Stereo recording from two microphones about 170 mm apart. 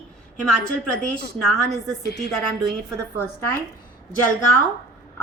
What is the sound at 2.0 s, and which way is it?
Speech, 70° left (ahead or behind).